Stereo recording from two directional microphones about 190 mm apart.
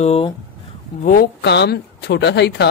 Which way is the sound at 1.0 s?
45° left (ahead or behind).